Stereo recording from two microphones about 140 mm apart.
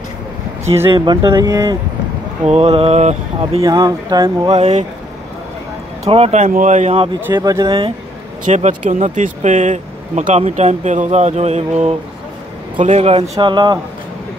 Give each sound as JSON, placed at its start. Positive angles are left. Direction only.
{"t": 0.9, "sound": "speech", "side_deg": -30}
{"t": 2.4, "sound": "speech", "side_deg": -45}
{"t": 3.6, "sound": "speech", "side_deg": -25}
{"t": 4.6, "sound": "speech", "side_deg": -55}
{"t": 6.0, "sound": "speech", "side_deg": -45}
{"t": 6.5, "sound": "speech", "side_deg": -60}
{"t": 7.3, "sound": "speech", "side_deg": -30}
{"t": 8.5, "sound": "speech", "side_deg": -60}